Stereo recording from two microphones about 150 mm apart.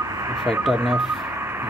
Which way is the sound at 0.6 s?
5° right (ahead or behind).